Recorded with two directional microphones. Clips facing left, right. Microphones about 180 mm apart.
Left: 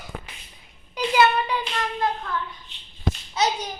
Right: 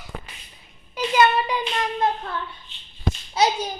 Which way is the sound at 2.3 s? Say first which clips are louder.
Left 1 dB; 30° right (ahead or behind).